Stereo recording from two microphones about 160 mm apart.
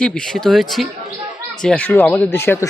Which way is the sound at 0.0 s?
5° left (ahead or behind).